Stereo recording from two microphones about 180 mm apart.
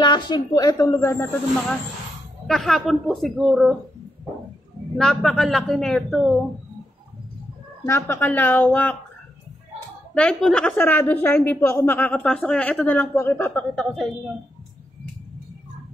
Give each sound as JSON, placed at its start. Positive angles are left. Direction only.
{"t": 0.0, "sound": "speech", "side_deg": 25}
{"t": 2.4, "sound": "a woman's voice", "side_deg": 0}
{"t": 4.9, "sound": "a woman's voice", "side_deg": 0}
{"t": 7.8, "sound": "a woman's voice", "side_deg": 15}
{"t": 10.1, "sound": "a woman's voice", "side_deg": 5}
{"t": 13.7, "sound": "a woman's voice", "side_deg": 0}